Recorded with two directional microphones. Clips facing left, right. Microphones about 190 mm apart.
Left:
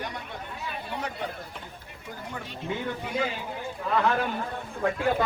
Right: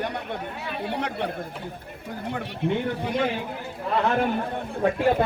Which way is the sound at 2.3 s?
65° right (ahead or behind).